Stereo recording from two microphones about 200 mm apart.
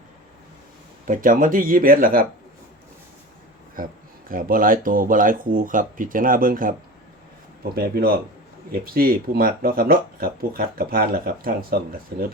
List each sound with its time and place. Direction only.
1.0 s speech: 40° right (ahead or behind)
3.8 s speech: 45° right (ahead or behind)
7.8 s speech: 50° right (ahead or behind)